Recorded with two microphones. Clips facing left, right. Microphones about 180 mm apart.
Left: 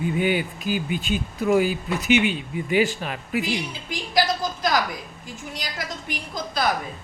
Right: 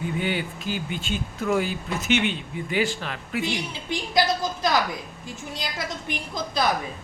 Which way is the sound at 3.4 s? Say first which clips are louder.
Left 1 dB; 25° right (ahead or behind).